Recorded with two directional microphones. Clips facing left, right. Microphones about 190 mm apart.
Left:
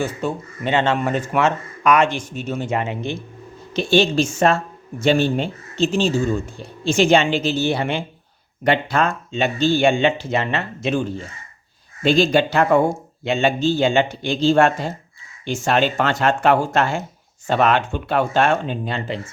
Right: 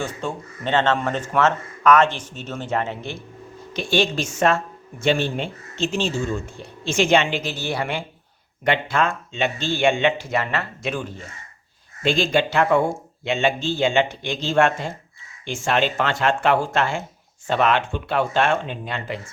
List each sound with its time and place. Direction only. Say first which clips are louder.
0.0 s speech: left 4 dB; 5° left (ahead or behind)
3.7 s speech: left 5 dB; 30° left (ahead or behind)
8.6 s speech: left 3 dB; 35° left (ahead or behind)
12.0 s speech: left 4 dB; 40° left (ahead or behind)